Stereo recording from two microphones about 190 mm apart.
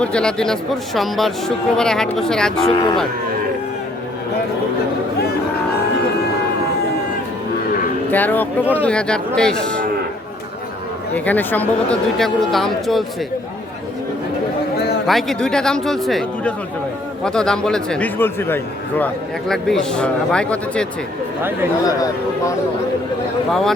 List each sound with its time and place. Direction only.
0.0 s a man's voice: 5° left (ahead or behind)
8.1 s a man's voice: 10° left (ahead or behind)
11.1 s a man's voice: 10° left (ahead or behind)
15.0 s a man's voice: centre (ahead or behind)
21.8 s speech: 20° left (ahead or behind)
23.5 s a man's voice: centre (ahead or behind)